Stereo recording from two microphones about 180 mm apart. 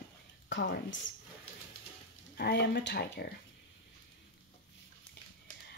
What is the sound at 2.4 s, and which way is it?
Speech, 65° left (ahead or behind).